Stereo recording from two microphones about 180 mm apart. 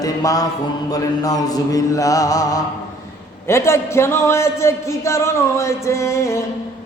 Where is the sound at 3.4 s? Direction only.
15° left (ahead or behind).